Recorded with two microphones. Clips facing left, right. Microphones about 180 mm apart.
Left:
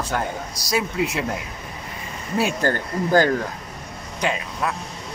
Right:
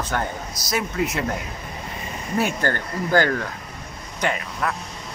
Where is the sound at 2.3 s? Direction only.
10° left (ahead or behind).